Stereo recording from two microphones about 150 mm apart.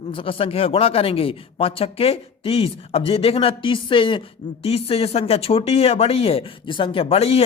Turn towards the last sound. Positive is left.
turn(degrees=45)  # may be behind; listen again after turning